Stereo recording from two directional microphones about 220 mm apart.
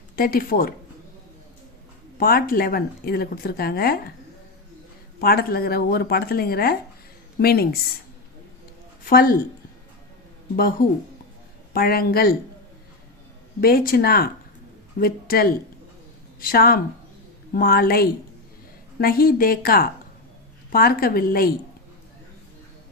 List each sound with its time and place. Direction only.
0.2 s speech: 40° left (ahead or behind)
2.1 s speech: 40° left (ahead or behind)
5.2 s speech: 45° left (ahead or behind)
9.0 s a woman's voice: 40° left (ahead or behind)
11.7 s speech: 45° left (ahead or behind)
13.6 s speech: 45° left (ahead or behind)